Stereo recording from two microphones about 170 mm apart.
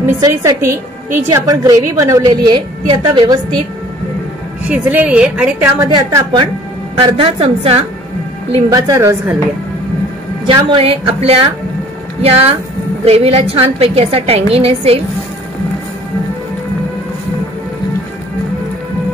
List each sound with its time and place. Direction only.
0.2 s a woman's voice: 20° right (ahead or behind)
4.6 s a woman's voice: 10° right (ahead or behind)
5.9 s a woman's voice: 25° right (ahead or behind)
8.6 s a woman's voice: 20° right (ahead or behind)
10.4 s a woman's voice: 30° right (ahead or behind)